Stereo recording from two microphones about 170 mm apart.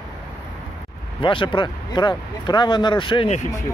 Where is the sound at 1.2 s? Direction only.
30° left (ahead or behind).